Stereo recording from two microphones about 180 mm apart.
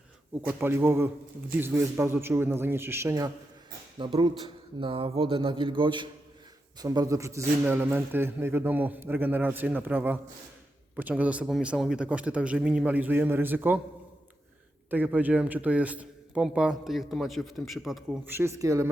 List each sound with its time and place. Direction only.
0.6 s a man's voice: 10° right (ahead or behind)
14.8 s a man's voice: 10° right (ahead or behind)
18.3 s a man's voice: 15° right (ahead or behind)